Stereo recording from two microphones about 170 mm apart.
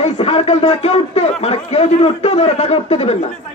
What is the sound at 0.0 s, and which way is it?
Speech, 35° left (ahead or behind).